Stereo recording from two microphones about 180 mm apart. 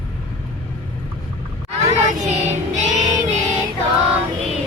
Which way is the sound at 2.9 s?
40° right (ahead or behind).